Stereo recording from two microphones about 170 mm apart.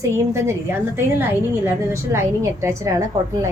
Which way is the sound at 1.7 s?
15° right (ahead or behind).